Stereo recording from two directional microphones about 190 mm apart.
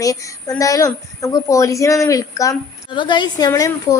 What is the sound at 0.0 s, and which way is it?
A woman's voice, 20° left (ahead or behind).